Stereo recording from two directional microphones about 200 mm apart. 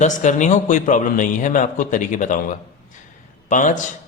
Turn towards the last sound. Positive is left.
turn(degrees=40)  # may be behind; listen again after turning